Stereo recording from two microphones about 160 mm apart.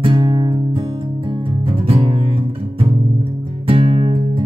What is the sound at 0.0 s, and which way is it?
Music, 30° right (ahead or behind).